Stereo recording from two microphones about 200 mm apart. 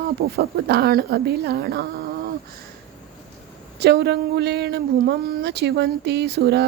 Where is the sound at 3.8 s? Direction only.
55° right (ahead or behind).